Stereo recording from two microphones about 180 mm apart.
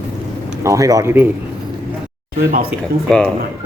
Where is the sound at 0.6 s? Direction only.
20° right (ahead or behind).